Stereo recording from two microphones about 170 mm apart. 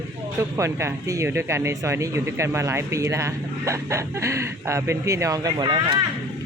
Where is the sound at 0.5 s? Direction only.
15° right (ahead or behind).